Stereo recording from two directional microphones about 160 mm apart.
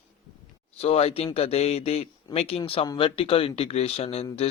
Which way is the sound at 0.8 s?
40° left (ahead or behind).